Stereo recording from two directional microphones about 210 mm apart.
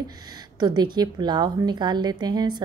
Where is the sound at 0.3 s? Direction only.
20° right (ahead or behind).